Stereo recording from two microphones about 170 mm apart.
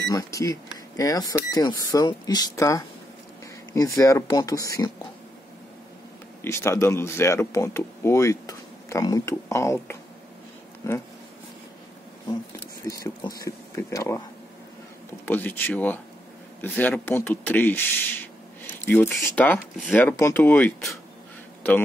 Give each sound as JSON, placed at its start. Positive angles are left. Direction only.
{"t": 0.0, "sound": "speech", "side_deg": 20}
{"t": 6.4, "sound": "speech", "side_deg": 15}
{"t": 12.8, "sound": "speech", "side_deg": 20}
{"t": 15.2, "sound": "speech", "side_deg": 10}